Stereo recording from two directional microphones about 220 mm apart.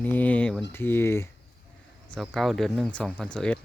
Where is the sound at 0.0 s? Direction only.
5° left (ahead or behind).